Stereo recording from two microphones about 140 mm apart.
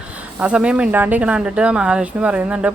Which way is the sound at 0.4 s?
5° right (ahead or behind).